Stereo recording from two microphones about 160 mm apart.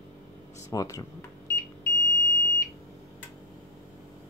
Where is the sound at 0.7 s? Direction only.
20° left (ahead or behind).